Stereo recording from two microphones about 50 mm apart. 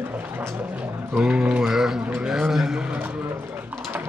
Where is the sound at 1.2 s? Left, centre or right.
Centre.